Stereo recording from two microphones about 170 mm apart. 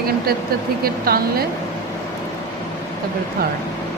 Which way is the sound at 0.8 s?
65° right (ahead or behind).